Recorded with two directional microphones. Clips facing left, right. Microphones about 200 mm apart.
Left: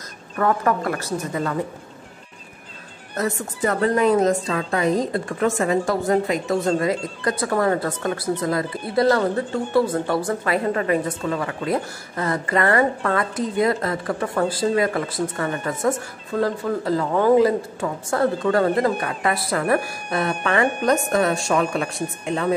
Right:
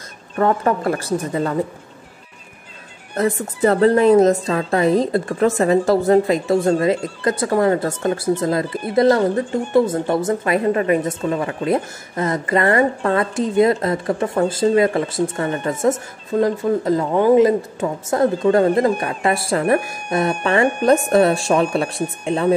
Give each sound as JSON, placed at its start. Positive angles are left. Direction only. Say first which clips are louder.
{"t": 0.4, "sound": "a woman's voice", "louder": "right 3 dB", "side_deg": -30}
{"t": 3.2, "sound": "a woman's voice", "louder": "right 5 dB", "side_deg": -30}
{"t": 6.8, "sound": "a woman's voice", "louder": "right 4 dB", "side_deg": -25}